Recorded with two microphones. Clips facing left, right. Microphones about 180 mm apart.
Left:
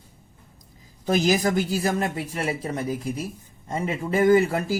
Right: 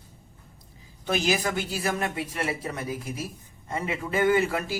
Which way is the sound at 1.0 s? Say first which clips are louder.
Left 5 dB; 40° left (ahead or behind).